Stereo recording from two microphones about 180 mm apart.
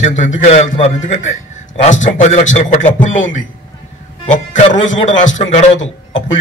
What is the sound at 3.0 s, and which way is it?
Speech, 90° left.